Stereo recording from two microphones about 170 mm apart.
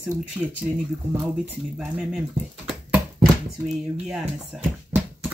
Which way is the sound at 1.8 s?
Centre (ahead or behind).